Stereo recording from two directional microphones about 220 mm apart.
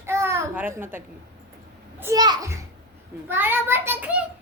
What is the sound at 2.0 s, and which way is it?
A child's voice, 15° right (ahead or behind).